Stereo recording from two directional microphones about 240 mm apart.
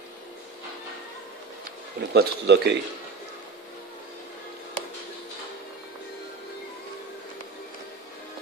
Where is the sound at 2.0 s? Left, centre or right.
Right.